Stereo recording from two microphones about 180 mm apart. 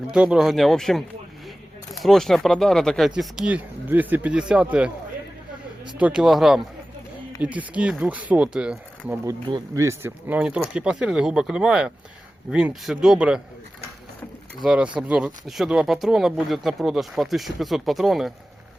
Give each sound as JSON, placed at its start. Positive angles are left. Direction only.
{"t": 0.1, "sound": "speech", "side_deg": -5}
{"t": 6.0, "sound": "speech", "side_deg": -5}
{"t": 9.2, "sound": "speech", "side_deg": -15}
{"t": 14.6, "sound": "speech", "side_deg": -5}